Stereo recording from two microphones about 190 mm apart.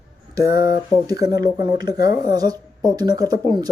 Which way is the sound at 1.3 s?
20° right (ahead or behind).